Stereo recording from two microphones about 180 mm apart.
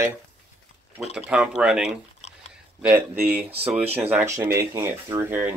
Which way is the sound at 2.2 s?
35° left (ahead or behind).